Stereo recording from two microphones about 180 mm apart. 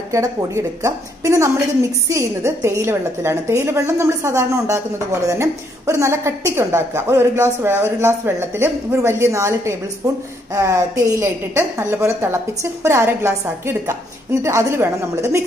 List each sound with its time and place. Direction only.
0.1 s a woman's voice: 15° right (ahead or behind)